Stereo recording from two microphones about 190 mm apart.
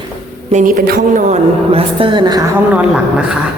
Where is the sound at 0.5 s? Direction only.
45° right (ahead or behind); by 2.6 s 20° right (ahead or behind).